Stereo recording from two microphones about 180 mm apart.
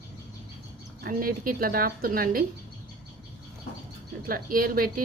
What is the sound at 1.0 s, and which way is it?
Speech, 50° right (ahead or behind).